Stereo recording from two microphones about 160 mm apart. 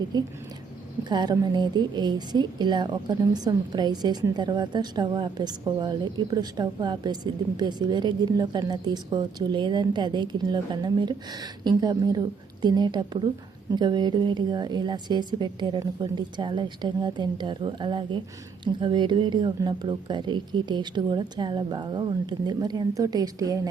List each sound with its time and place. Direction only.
0.1 s a woman's voice: 25° right (ahead or behind)